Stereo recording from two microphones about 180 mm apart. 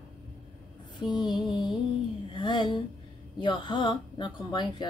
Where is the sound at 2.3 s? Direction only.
25° left (ahead or behind).